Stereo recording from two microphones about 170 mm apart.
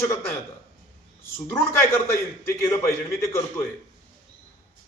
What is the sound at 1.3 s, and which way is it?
A man's voice, 15° left (ahead or behind).